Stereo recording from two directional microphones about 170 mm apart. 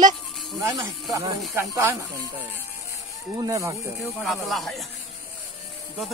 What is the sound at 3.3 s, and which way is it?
Speech, 20° right (ahead or behind).